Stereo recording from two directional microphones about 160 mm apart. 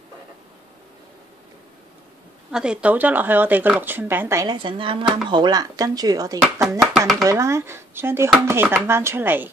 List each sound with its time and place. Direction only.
2.5 s speech: 5° right (ahead or behind)
4.6 s speech: 30° right (ahead or behind)
6.8 s speech: centre (ahead or behind)
7.2 s speech: 20° right (ahead or behind)